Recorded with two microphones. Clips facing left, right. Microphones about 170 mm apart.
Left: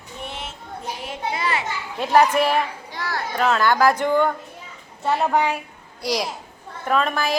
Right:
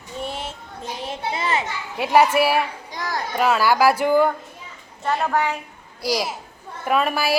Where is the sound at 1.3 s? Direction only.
20° right (ahead or behind).